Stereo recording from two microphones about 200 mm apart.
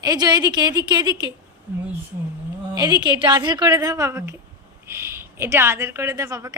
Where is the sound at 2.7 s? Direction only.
20° right (ahead or behind).